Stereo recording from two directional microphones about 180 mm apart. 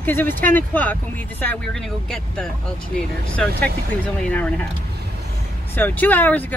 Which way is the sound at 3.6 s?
5° left (ahead or behind).